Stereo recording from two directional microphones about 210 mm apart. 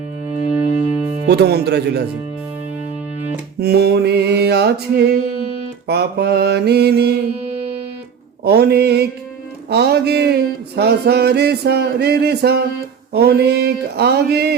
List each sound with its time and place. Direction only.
0.4 s music: 5° right (ahead or behind)
1.3 s music: 50° right (ahead or behind)
3.6 s music: 50° right (ahead or behind)
8.4 s music: 50° right (ahead or behind)